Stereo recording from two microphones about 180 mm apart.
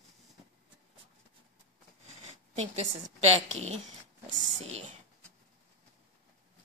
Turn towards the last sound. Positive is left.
turn(degrees=-40)  # may be behind; listen again after turning